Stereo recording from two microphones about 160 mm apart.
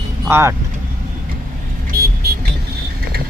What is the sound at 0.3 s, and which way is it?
Speech, 15° right (ahead or behind).